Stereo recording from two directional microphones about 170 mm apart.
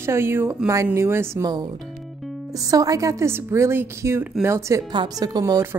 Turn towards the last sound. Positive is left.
turn(degrees=-20)  # may be behind; listen again after turning